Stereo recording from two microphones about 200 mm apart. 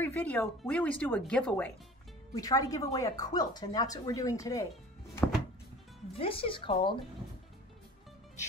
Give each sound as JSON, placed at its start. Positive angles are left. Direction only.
{"t": 0.0, "sound": "speech", "side_deg": 10}
{"t": 2.3, "sound": "speech", "side_deg": 15}
{"t": 6.1, "sound": "speech", "side_deg": 25}